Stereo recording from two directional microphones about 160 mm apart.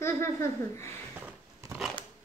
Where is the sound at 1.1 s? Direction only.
10° right (ahead or behind).